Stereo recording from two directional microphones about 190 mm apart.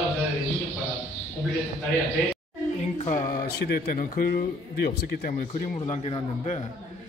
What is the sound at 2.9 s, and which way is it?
Speech, 40° left (ahead or behind).